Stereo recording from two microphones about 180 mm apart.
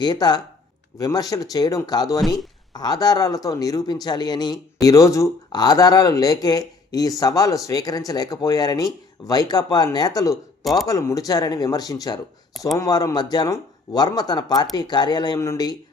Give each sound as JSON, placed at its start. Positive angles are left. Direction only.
{"t": 0.0, "sound": "speech", "side_deg": 25}
{"t": 10.6, "sound": "speech", "side_deg": 0}
{"t": 10.8, "sound": "speech", "side_deg": 20}